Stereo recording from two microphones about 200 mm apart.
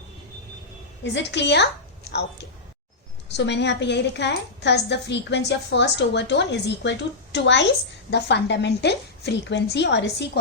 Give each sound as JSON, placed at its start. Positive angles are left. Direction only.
{"t": 1.0, "sound": "a woman's voice", "side_deg": 60}
{"t": 3.3, "sound": "a woman's voice", "side_deg": 60}